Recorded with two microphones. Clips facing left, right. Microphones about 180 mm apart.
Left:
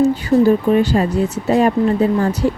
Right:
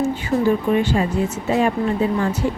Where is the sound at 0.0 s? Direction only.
35° left (ahead or behind).